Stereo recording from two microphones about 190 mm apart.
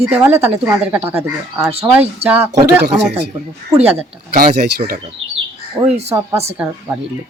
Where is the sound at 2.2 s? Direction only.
30° right (ahead or behind).